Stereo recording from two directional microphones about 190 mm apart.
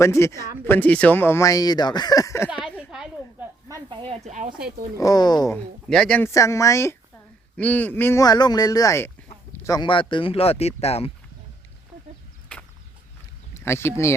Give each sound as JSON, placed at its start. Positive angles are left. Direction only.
{"t": 0.0, "sound": "speech", "side_deg": 15}
{"t": 2.5, "sound": "a sound", "side_deg": -5}
{"t": 2.9, "sound": "snake", "side_deg": -5}
{"t": 3.7, "sound": "speech", "side_deg": -20}
{"t": 4.9, "sound": "speech", "side_deg": 20}
{"t": 5.9, "sound": "speech", "side_deg": 5}
{"t": 12.5, "sound": "a sound", "side_deg": 5}
{"t": 13.5, "sound": "rowboat", "side_deg": 15}